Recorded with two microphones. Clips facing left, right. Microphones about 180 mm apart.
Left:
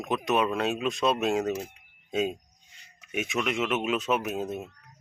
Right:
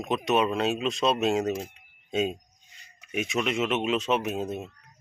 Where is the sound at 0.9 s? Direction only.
20° right (ahead or behind).